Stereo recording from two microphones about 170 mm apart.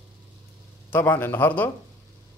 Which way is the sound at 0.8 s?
10° left (ahead or behind).